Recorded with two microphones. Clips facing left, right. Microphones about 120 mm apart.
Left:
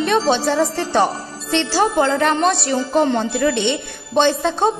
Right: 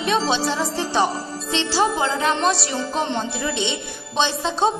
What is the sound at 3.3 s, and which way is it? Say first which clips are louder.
Speech: left 7 dB; 60° left (ahead or behind).